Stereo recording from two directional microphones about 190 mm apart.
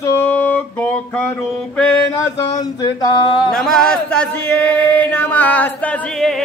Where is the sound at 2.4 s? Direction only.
20° left (ahead or behind).